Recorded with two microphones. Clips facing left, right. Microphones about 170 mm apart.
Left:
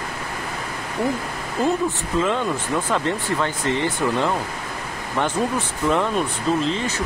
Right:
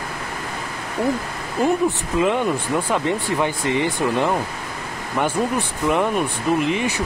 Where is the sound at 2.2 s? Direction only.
15° right (ahead or behind).